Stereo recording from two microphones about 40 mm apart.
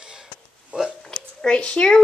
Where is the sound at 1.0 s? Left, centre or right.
Centre.